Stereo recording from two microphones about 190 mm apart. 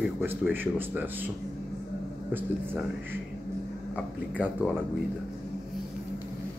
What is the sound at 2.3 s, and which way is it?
Speech, 10° right (ahead or behind).